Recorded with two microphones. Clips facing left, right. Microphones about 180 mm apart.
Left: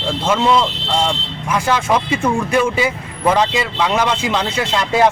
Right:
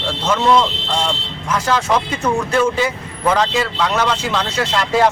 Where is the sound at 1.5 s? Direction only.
10° left (ahead or behind).